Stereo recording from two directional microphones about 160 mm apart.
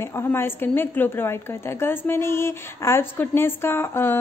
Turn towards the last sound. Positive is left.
turn(degrees=15)  # may be behind; listen again after turning